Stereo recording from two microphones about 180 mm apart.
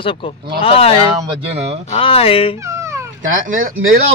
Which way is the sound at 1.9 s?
30° left (ahead or behind).